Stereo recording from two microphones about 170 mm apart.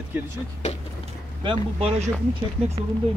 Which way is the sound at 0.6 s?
45° left (ahead or behind).